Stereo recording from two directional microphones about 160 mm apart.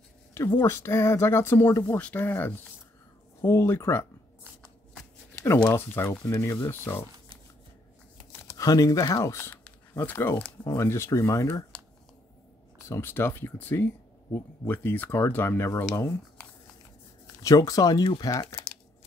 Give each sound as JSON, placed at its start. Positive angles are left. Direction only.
{"t": 0.6, "sound": "speech", "side_deg": 15}
{"t": 5.3, "sound": "a sound", "side_deg": 15}
{"t": 5.6, "sound": "speech", "side_deg": 15}
{"t": 8.3, "sound": "speech", "side_deg": 20}
{"t": 12.8, "sound": "speech", "side_deg": 15}